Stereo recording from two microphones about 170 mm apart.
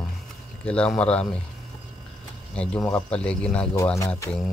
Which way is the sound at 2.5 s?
5° left (ahead or behind).